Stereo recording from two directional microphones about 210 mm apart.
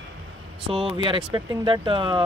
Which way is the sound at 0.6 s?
25° right (ahead or behind).